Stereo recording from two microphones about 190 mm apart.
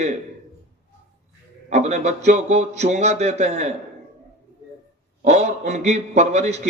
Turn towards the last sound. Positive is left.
turn(degrees=-35)  # may be behind; listen again after turning